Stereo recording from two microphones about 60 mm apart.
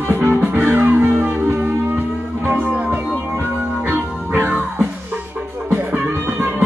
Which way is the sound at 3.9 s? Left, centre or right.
Right.